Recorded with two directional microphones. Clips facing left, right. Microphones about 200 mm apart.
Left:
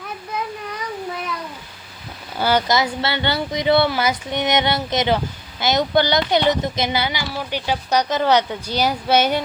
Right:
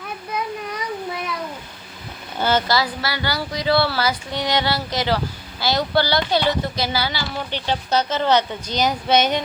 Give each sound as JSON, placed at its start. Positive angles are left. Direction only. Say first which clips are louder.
{"t": 2.4, "sound": "speech", "louder": "left 1 dB", "side_deg": 15}